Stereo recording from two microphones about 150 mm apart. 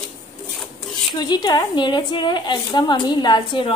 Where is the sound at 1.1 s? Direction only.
30° left (ahead or behind).